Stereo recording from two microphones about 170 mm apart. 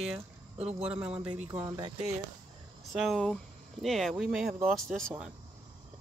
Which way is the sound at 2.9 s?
Centre (ahead or behind).